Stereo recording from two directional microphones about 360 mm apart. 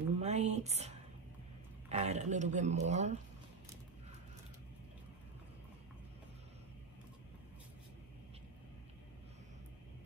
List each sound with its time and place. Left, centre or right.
0.2 s a woman's voice: centre